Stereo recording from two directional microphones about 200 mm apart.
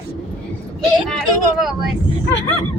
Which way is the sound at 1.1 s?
Centre (ahead or behind).